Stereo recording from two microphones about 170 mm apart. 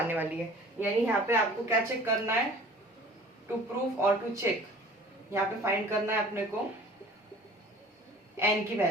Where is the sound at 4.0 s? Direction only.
15° right (ahead or behind).